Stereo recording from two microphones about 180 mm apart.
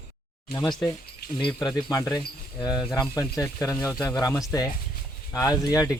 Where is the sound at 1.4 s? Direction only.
25° left (ahead or behind).